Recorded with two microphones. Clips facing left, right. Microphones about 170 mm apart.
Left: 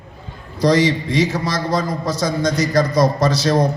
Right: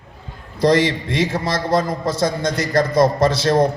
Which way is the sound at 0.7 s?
55° right (ahead or behind).